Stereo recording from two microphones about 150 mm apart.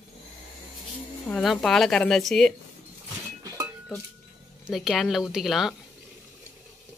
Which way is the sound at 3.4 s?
25° right (ahead or behind).